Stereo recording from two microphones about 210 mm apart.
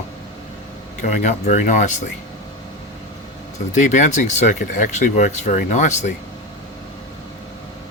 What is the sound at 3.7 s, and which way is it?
Speech, 35° left (ahead or behind).